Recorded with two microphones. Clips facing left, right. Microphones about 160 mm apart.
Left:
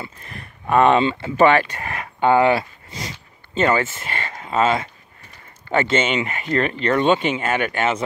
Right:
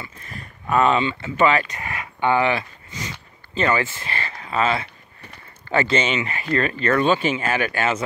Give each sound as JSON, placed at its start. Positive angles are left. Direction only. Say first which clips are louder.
{"t": 0.7, "sound": "speech", "louder": "left 3 dB", "side_deg": 35}
{"t": 1.7, "sound": "speech", "louder": "left 2 dB", "side_deg": 50}
{"t": 3.5, "sound": "speech", "louder": "left 3 dB", "side_deg": 30}
{"t": 5.8, "sound": "speech", "louder": "left 1 dB", "side_deg": 25}